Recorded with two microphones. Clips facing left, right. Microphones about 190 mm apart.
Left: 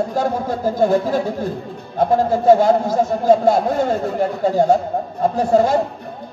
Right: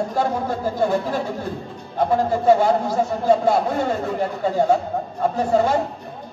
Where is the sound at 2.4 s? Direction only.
40° left (ahead or behind).